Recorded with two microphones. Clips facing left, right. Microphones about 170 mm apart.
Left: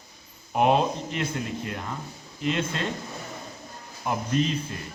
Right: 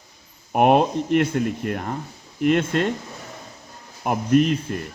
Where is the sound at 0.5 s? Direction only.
60° right (ahead or behind).